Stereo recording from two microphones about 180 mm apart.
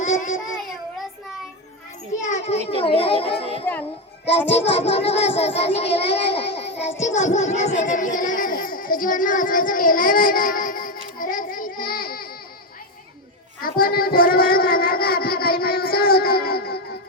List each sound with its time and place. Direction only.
0.0 s a sound: 40° left (ahead or behind)
2.2 s children playing: 40° left (ahead or behind)
2.8 s a child's voice: 30° left (ahead or behind)
3.7 s a child's voice: 5° left (ahead or behind)
4.5 s a child's voice: 35° left (ahead or behind); by 12.3 s 55° left (ahead or behind)
13.6 s child singing: 55° left (ahead or behind)